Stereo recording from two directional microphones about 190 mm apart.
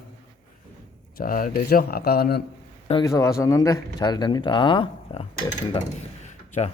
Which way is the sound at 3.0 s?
15° left (ahead or behind).